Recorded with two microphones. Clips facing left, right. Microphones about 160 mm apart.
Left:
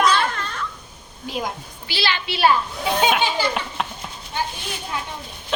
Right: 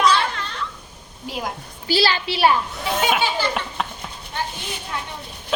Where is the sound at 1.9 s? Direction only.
40° right (ahead or behind).